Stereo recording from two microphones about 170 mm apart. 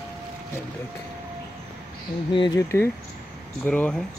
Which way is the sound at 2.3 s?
25° left (ahead or behind).